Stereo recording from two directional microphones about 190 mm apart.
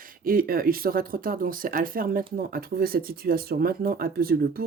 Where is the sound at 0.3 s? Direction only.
50° right (ahead or behind).